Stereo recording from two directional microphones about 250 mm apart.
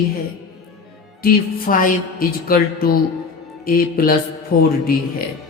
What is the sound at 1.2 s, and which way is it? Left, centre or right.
Speech, left.